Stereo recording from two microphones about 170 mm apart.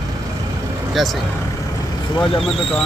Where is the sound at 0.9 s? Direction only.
Centre (ahead or behind).